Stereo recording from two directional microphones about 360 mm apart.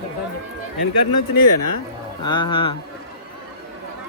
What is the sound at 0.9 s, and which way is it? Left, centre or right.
Speech, left.